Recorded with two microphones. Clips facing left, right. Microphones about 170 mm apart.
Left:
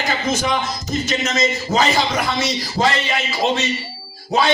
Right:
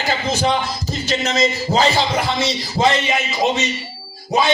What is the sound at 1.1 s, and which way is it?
Speech, 30° right (ahead or behind).